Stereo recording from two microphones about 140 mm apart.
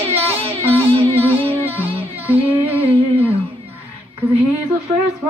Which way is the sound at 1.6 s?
15° right (ahead or behind).